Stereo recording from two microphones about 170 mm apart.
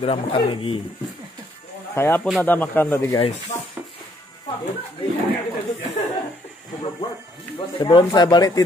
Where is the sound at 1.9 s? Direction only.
15° left (ahead or behind).